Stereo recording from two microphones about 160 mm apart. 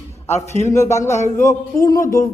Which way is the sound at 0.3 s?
45° left (ahead or behind).